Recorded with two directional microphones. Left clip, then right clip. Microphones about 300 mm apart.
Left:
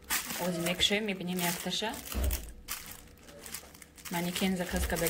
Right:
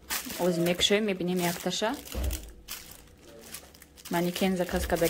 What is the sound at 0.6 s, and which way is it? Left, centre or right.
Speech, centre.